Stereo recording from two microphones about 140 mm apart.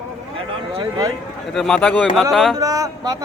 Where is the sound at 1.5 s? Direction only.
5° left (ahead or behind).